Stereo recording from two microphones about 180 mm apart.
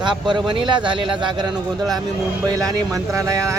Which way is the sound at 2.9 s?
20° right (ahead or behind).